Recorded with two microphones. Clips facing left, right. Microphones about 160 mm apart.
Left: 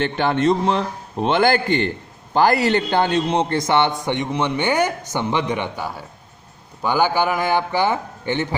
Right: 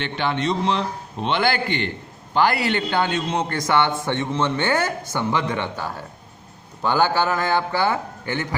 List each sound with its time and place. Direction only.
0.0 s a man's voice: 45° left (ahead or behind); by 8.5 s 20° left (ahead or behind)